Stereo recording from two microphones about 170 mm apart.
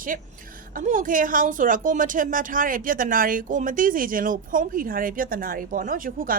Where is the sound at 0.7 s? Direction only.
50° right (ahead or behind).